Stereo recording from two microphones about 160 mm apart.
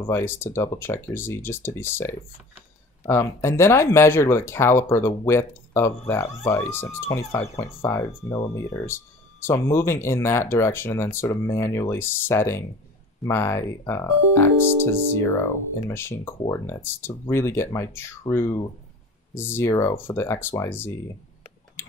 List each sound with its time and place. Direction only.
0.1 s speech: 15° left (ahead or behind)